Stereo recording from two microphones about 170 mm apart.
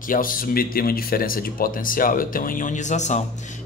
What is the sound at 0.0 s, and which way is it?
A man's voice, 55° left (ahead or behind).